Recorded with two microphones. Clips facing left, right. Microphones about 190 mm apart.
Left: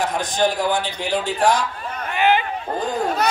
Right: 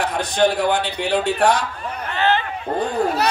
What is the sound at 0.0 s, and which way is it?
A man's voice, 65° right (ahead or behind).